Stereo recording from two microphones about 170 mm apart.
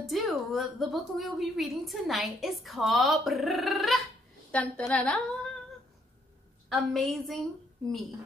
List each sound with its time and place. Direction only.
0.0 s a woman's voice: centre (ahead or behind)
6.7 s a woman's voice: centre (ahead or behind)